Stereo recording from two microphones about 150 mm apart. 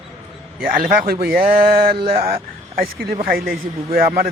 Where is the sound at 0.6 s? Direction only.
75° right (ahead or behind).